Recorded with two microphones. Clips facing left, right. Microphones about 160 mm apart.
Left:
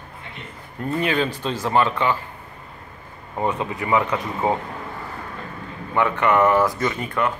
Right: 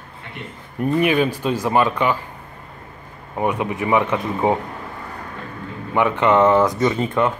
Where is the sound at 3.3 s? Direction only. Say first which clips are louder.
Right 3 dB; 15° right (ahead or behind).